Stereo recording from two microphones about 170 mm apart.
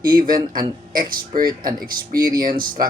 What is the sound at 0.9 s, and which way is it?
Speech, 55° right (ahead or behind).